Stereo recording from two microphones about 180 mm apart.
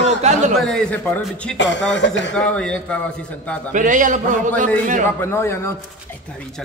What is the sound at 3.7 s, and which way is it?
Speech, 45° right (ahead or behind).